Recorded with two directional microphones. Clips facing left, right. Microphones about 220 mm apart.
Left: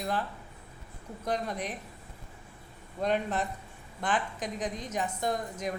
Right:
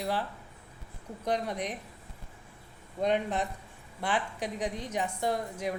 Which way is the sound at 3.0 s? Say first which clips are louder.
Right 1 dB; 15° right (ahead or behind).